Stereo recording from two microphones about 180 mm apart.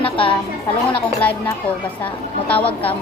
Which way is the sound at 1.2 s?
10° left (ahead or behind).